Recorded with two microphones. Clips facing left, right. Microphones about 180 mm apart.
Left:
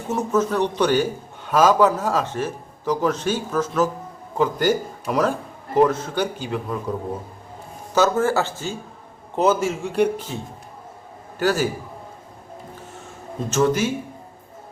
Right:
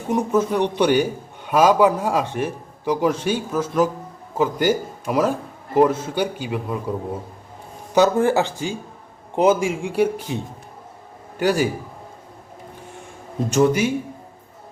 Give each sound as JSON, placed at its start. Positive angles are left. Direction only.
{"t": 0.1, "sound": "a man's voice", "side_deg": -10}
{"t": 7.9, "sound": "a man's voice", "side_deg": -15}
{"t": 11.3, "sound": "a man's voice", "side_deg": -15}
{"t": 13.5, "sound": "a man's voice", "side_deg": -15}